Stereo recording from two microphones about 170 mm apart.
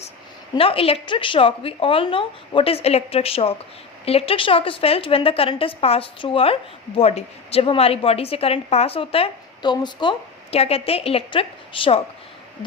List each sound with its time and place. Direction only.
0.5 s a woman's voice: 35° left (ahead or behind)